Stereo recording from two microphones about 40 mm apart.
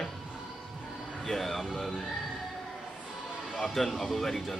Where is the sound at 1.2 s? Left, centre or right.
Centre.